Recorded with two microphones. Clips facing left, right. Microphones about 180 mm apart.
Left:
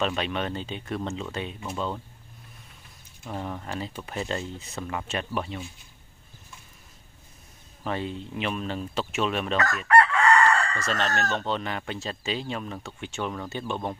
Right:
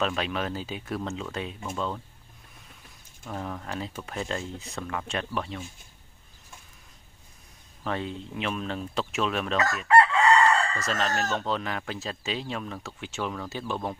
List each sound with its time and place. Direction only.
0.0 s speech: centre (ahead or behind)
3.3 s speech: 5° left (ahead or behind)
7.8 s speech: centre (ahead or behind)
9.8 s chicken: 20° right (ahead or behind)
10.7 s speech: centre (ahead or behind)